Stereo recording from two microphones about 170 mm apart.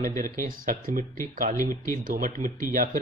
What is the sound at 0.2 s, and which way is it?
Speech, 50° right (ahead or behind).